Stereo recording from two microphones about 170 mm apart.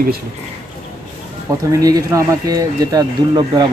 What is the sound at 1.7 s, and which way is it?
Speech, 20° right (ahead or behind).